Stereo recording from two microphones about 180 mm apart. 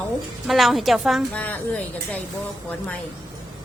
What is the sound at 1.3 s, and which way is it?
Speech, 10° left (ahead or behind).